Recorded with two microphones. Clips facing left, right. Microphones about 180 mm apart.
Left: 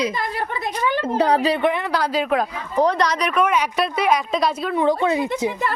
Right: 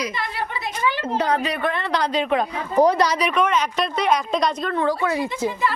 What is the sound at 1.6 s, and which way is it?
A woman's voice, 15° left (ahead or behind).